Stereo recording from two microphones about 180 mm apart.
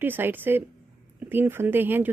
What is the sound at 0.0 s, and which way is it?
Speech, 10° right (ahead or behind).